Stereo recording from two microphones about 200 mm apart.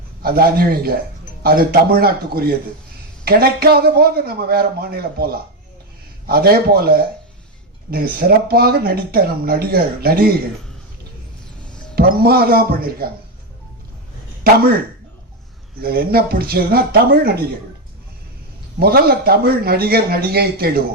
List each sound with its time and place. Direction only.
0.2 s speech: 50° right (ahead or behind)
11.9 s speech: 50° right (ahead or behind)
15.8 s speech: 50° right (ahead or behind)
18.8 s speech: 50° right (ahead or behind)